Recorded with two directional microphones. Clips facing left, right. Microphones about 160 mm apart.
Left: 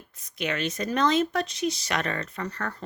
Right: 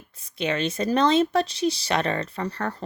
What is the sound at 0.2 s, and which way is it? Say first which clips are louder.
Speech: right 4 dB; 30° right (ahead or behind).